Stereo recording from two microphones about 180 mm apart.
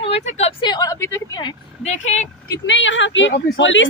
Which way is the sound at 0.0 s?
30° left (ahead or behind).